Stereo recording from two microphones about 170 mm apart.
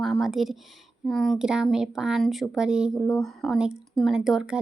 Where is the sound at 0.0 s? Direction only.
Centre (ahead or behind).